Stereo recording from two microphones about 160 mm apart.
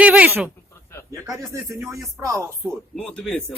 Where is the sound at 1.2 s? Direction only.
20° right (ahead or behind).